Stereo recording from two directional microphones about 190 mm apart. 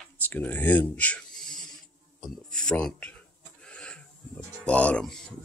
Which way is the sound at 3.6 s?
5° left (ahead or behind).